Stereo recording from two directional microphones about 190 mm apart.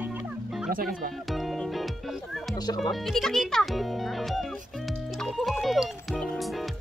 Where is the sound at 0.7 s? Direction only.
50° right (ahead or behind).